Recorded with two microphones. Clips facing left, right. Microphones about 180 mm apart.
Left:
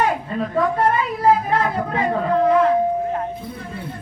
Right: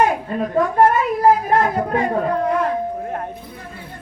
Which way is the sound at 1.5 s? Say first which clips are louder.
Right 3 dB; 50° right (ahead or behind).